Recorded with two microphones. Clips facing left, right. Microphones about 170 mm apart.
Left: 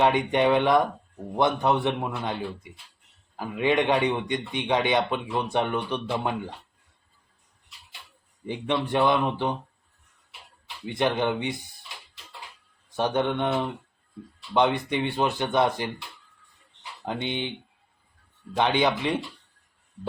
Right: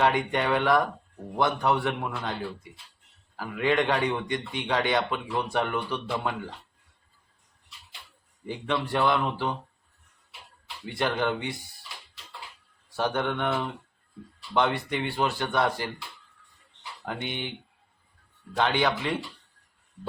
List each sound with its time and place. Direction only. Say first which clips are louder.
0.0 s a man's voice: left 3 dB; 20° left (ahead or behind)
3.3 s a man's voice: left 2 dB; 20° left (ahead or behind)
8.4 s a man's voice: left 2 dB; 20° left (ahead or behind)
10.8 s a man's voice: left 3 dB; 20° left (ahead or behind)
13.0 s a man's voice: left 3 dB; 20° left (ahead or behind)
17.1 s a man's voice: left 4 dB; 20° left (ahead or behind)
18.5 s a man's voice: left 2 dB; 20° left (ahead or behind)